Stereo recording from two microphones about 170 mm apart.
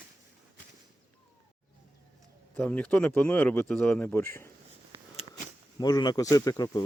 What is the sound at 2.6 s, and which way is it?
Speech, 10° left (ahead or behind).